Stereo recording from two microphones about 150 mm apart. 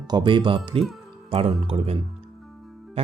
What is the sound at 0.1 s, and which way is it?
Speech, 30° right (ahead or behind).